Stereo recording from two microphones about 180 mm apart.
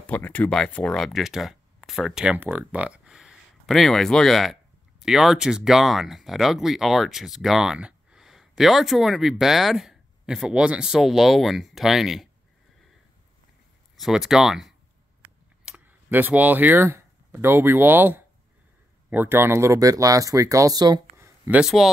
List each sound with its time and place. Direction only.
0.0 s speech: 10° left (ahead or behind)
13.9 s speech: centre (ahead or behind)
15.2 s a sound: 10° right (ahead or behind)
19.0 s speech: 10° right (ahead or behind)
21.5 s speech: 5° right (ahead or behind)